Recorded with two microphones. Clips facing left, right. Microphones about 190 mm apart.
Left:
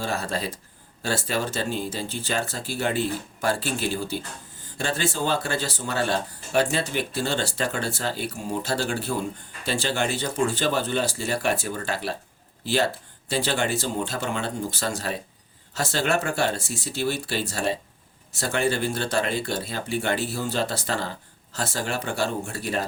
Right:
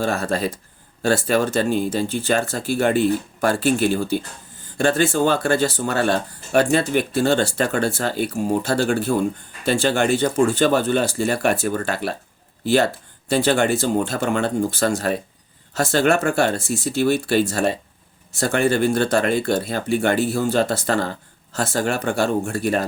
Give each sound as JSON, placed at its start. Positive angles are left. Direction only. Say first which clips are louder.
{"t": 0.0, "sound": "speech", "louder": "right 7 dB", "side_deg": -50}